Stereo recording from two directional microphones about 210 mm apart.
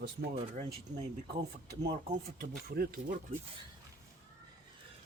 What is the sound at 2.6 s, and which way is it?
Speech, 45° right (ahead or behind).